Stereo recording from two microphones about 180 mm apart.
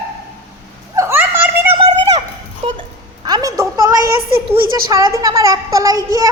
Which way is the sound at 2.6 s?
30° right (ahead or behind).